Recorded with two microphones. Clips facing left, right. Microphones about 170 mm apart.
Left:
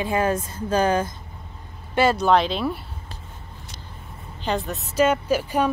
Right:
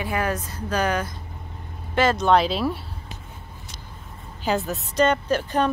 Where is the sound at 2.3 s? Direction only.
Centre (ahead or behind).